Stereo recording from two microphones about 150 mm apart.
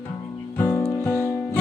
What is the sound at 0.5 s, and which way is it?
Music, 15° left (ahead or behind).